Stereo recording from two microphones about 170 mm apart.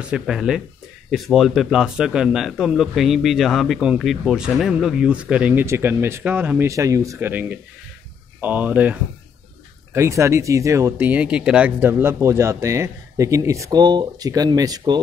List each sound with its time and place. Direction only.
0.1 s speech: 5° right (ahead or behind)
9.9 s speech: 15° right (ahead or behind)